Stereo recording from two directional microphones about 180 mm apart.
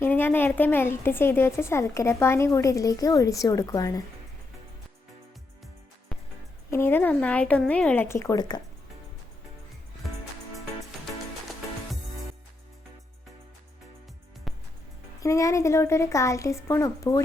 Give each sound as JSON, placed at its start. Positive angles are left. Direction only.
{"t": 0.0, "sound": "a woman's voice", "side_deg": 10}
{"t": 6.7, "sound": "a woman's voice", "side_deg": 15}
{"t": 14.5, "sound": "music", "side_deg": 0}
{"t": 15.2, "sound": "a woman's voice", "side_deg": 15}